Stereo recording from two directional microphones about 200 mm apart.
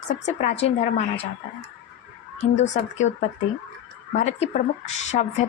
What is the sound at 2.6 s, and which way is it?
Speech, 35° left (ahead or behind).